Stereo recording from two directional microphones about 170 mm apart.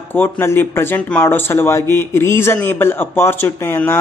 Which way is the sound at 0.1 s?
15° left (ahead or behind).